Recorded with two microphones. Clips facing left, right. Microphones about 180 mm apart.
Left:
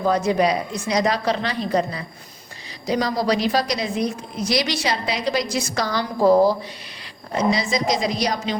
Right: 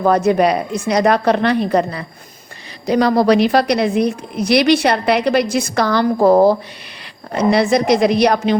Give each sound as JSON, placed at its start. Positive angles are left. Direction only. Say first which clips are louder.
{"t": 0.0, "sound": "a woman's voice", "louder": "right 5 dB", "side_deg": -55}